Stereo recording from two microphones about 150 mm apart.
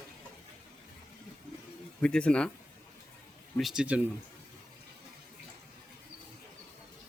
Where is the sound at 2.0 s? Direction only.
5° left (ahead or behind).